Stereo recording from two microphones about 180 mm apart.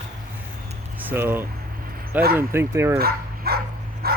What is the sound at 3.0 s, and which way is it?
Speech, 60° right (ahead or behind).